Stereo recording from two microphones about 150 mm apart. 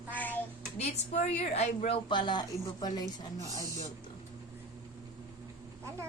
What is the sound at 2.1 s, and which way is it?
Speech, 30° left (ahead or behind).